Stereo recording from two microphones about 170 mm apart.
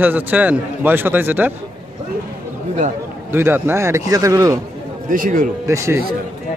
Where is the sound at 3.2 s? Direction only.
10° right (ahead or behind).